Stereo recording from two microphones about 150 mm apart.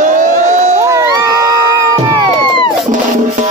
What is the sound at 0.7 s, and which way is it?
Crowd, 20° right (ahead or behind).